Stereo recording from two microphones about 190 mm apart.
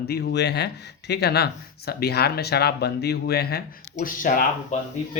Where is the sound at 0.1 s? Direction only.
60° left (ahead or behind).